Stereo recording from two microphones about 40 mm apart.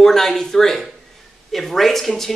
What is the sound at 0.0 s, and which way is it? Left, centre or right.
Speech, centre.